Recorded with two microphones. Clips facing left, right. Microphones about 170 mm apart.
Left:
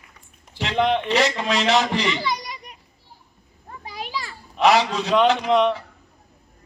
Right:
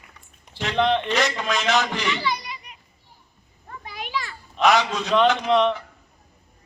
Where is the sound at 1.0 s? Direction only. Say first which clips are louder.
Left 3 dB; 30° left (ahead or behind).